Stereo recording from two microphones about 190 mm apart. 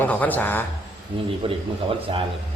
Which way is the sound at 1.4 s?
25° right (ahead or behind).